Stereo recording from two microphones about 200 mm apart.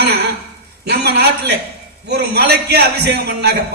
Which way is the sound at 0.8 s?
50° right (ahead or behind).